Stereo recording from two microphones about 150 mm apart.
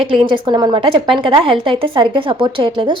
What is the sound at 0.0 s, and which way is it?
A woman's voice, 35° right (ahead or behind).